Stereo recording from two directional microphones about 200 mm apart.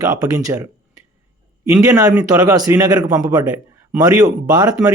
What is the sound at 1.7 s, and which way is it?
A man's voice, 15° right (ahead or behind).